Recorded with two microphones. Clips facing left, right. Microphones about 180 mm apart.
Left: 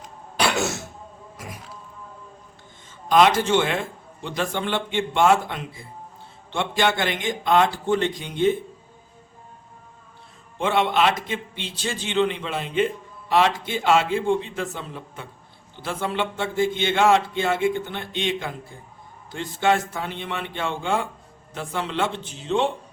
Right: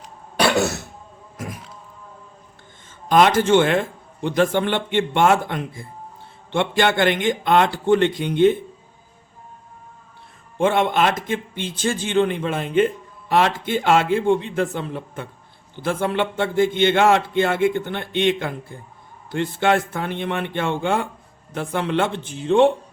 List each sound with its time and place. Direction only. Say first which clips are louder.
3.1 s a man's voice: right 3 dB; 50° right (ahead or behind)
10.6 s a man's voice: right 3 dB; 50° right (ahead or behind)